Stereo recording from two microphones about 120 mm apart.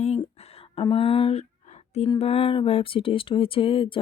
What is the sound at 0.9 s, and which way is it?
Speech, 50° left (ahead or behind).